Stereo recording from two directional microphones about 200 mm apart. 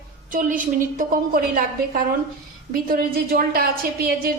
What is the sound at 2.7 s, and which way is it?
A woman's voice, 45° right (ahead or behind).